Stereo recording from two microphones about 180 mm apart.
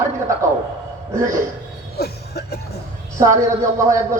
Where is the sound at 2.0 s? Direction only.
60° left (ahead or behind).